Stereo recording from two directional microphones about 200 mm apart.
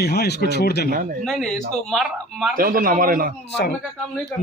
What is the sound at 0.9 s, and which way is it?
Speech, 40° right (ahead or behind).